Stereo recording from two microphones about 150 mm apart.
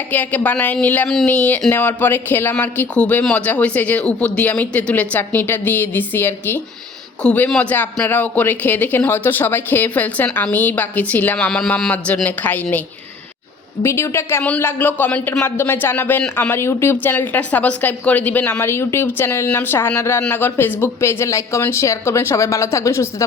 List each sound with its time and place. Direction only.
0.1 s speech: 10° left (ahead or behind)
13.8 s speech: 20° left (ahead or behind)